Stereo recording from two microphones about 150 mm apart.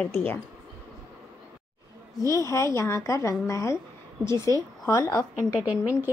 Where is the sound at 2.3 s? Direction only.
20° left (ahead or behind).